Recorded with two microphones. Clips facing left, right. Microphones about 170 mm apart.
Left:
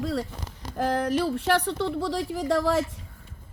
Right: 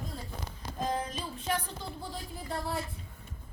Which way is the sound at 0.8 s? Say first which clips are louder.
Left 10 dB; 75° left (ahead or behind).